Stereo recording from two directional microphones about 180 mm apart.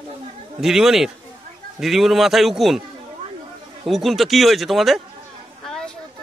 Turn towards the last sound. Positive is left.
turn(degrees=5)  # may be behind; listen again after turning